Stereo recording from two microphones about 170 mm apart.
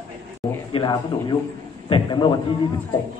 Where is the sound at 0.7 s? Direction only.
25° left (ahead or behind).